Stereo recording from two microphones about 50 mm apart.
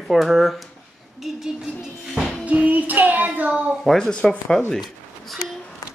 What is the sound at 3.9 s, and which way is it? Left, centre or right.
Speech, centre.